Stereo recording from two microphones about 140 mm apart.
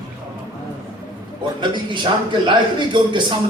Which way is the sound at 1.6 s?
35° right (ahead or behind).